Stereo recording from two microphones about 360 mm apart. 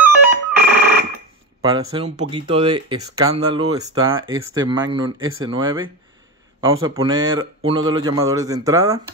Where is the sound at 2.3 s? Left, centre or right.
Centre.